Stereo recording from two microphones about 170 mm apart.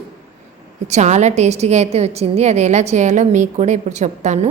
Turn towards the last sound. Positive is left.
turn(degrees=-45)  # may be behind; listen again after turning